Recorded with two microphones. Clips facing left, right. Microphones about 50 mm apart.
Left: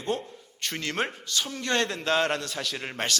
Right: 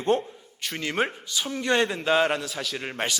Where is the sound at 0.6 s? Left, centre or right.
Centre.